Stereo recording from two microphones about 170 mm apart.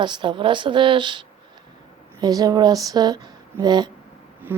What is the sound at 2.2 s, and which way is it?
Speech, 25° right (ahead or behind).